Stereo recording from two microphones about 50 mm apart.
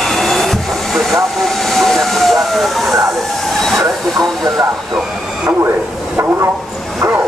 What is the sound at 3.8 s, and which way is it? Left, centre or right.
Train, right.